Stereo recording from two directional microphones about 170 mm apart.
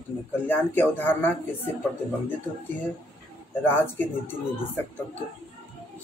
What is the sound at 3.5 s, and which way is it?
Speech, 10° left (ahead or behind).